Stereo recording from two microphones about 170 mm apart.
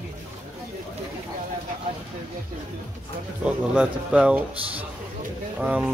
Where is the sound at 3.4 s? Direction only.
5° right (ahead or behind).